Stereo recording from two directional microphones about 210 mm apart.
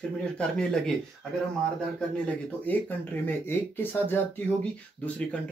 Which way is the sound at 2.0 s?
5° left (ahead or behind).